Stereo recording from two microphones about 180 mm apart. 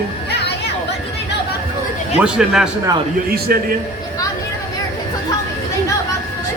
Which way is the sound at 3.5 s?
55° right (ahead or behind).